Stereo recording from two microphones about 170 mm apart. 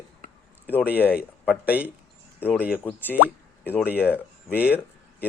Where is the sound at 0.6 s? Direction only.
10° left (ahead or behind).